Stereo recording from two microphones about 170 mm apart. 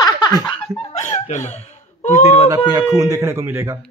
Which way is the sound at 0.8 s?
40° left (ahead or behind).